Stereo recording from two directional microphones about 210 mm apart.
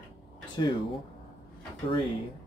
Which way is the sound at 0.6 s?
20° left (ahead or behind).